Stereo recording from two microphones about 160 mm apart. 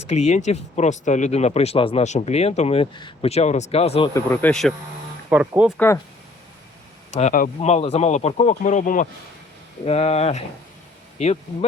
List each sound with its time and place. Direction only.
0.1 s speech: 45° left (ahead or behind)
4.1 s speech: 15° left (ahead or behind)
5.3 s speech: 10° right (ahead or behind)
7.1 s speech: 45° left (ahead or behind)
7.6 s speech: 40° left (ahead or behind)
9.8 s speech: 40° left (ahead or behind)